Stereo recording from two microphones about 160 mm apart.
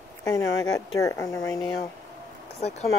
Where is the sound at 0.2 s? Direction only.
20° left (ahead or behind).